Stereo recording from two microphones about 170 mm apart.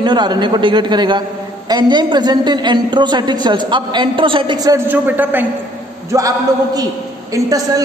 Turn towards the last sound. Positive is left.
turn(degrees=-20)  # may be behind; listen again after turning